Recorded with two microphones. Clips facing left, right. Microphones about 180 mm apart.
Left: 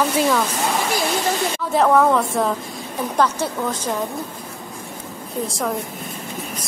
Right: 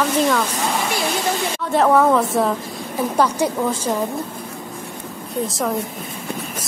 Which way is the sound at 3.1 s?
10° right (ahead or behind).